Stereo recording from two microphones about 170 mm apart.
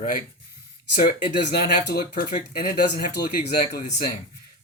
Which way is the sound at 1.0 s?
60° left (ahead or behind).